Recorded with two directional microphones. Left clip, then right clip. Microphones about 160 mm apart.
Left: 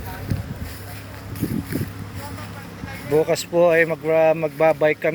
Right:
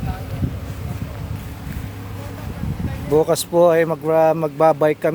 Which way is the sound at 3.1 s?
30° right (ahead or behind).